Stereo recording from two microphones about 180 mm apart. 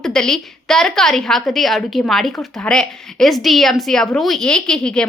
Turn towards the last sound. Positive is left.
turn(degrees=5)  # may be behind; listen again after turning